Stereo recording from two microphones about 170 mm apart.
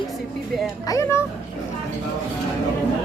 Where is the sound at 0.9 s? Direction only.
15° left (ahead or behind).